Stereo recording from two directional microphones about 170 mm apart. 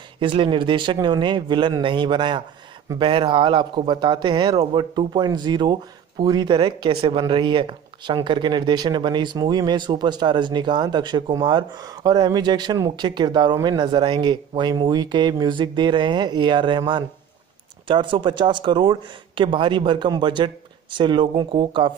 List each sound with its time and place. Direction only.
0.2 s speech: 30° right (ahead or behind)